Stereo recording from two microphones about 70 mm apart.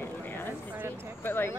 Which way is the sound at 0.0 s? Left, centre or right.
Left.